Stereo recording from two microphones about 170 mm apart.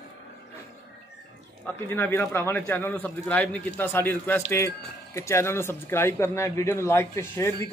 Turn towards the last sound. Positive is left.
turn(degrees=15)  # may be behind; listen again after turning